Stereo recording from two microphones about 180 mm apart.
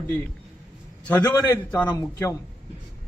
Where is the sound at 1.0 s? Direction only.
10° left (ahead or behind).